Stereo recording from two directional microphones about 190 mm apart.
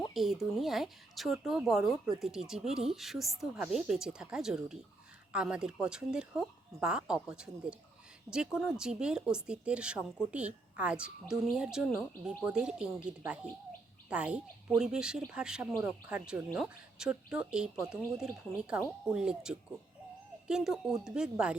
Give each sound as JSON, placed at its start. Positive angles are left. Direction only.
{"t": 0.1, "sound": "speech", "side_deg": 0}